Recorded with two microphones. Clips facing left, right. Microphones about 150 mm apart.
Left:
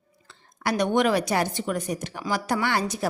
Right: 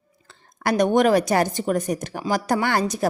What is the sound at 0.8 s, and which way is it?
A woman's voice, 45° right (ahead or behind).